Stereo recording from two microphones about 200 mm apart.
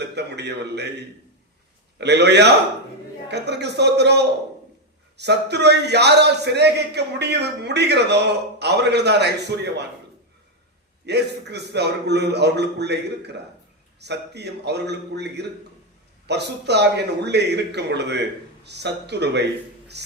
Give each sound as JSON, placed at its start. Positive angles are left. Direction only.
{"t": 0.2, "sound": "a man's voice", "side_deg": -55}
{"t": 11.0, "sound": "a man's voice", "side_deg": -55}